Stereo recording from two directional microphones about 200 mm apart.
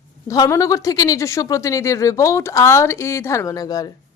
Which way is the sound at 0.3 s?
15° left (ahead or behind).